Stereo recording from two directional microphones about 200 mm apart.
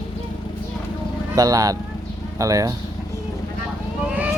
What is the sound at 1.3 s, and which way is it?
A child's voice, 15° right (ahead or behind).